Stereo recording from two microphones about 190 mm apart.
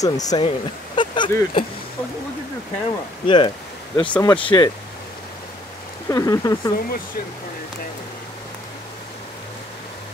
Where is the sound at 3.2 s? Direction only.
25° left (ahead or behind).